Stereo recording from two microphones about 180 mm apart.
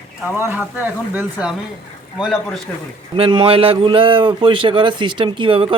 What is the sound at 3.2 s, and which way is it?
A man's voice, 30° right (ahead or behind).